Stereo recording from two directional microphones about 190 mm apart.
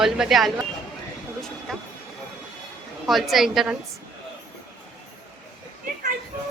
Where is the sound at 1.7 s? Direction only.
Centre (ahead or behind).